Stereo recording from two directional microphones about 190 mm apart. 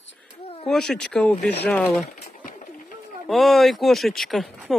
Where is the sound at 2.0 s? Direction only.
45° left (ahead or behind).